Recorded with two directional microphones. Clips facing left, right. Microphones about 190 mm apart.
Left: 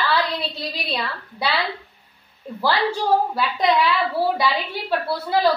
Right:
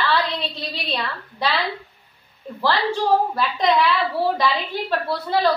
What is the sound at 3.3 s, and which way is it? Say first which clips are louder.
A woman's voice: even; 10° left (ahead or behind).